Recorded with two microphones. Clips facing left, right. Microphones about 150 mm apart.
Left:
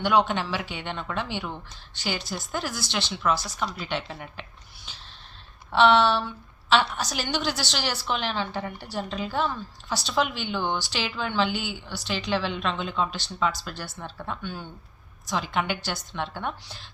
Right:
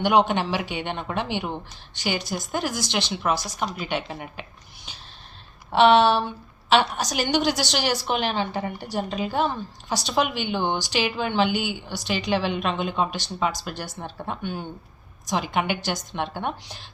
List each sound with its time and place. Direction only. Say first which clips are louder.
0.0 s a woman's voice: right 3 dB; 15° right (ahead or behind)
4.9 s a sound: right 2 dB; 15° right (ahead or behind)
5.7 s a woman's voice: right 3 dB; 15° right (ahead or behind)